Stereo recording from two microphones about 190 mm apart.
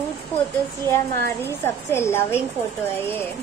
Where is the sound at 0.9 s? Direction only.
15° left (ahead or behind).